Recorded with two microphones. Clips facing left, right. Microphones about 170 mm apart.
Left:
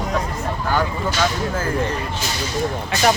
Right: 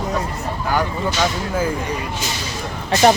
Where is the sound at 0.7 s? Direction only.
10° right (ahead or behind).